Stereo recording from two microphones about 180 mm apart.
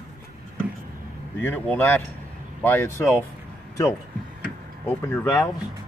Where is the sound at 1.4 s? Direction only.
10° left (ahead or behind).